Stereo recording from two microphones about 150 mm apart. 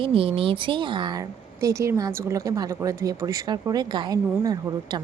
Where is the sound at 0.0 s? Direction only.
40° right (ahead or behind).